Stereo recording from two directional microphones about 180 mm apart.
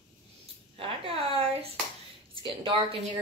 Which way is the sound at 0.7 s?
30° right (ahead or behind).